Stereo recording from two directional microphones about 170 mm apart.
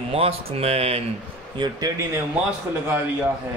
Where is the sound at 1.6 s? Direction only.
25° right (ahead or behind).